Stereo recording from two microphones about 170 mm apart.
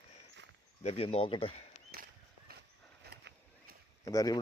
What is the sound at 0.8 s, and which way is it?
Speech, 35° left (ahead or behind).